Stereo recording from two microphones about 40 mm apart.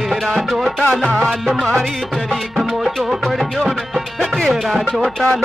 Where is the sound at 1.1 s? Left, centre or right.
Centre.